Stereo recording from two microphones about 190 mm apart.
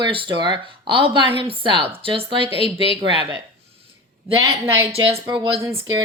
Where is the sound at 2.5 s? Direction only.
30° left (ahead or behind).